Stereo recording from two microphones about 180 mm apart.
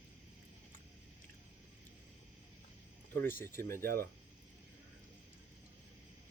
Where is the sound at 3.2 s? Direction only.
15° left (ahead or behind).